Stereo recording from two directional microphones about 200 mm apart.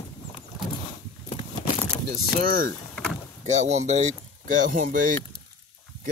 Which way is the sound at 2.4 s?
45° right (ahead or behind).